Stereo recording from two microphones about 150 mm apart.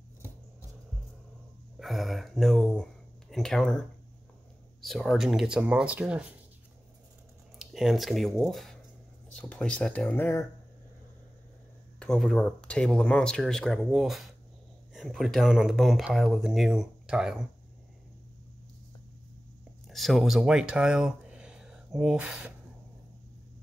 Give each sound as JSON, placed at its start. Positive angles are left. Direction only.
{"t": 1.8, "sound": "speech", "side_deg": 0}
{"t": 4.8, "sound": "speech", "side_deg": 0}
{"t": 7.5, "sound": "speech", "side_deg": 0}
{"t": 12.0, "sound": "speech", "side_deg": 5}
{"t": 19.9, "sound": "speech", "side_deg": 0}